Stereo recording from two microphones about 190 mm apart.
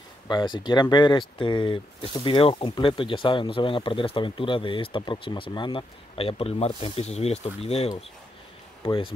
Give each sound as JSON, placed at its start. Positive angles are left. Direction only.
{"t": 0.3, "sound": "speech", "side_deg": 25}